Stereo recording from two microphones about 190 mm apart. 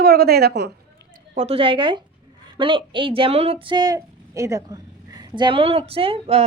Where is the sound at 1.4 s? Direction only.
30° right (ahead or behind).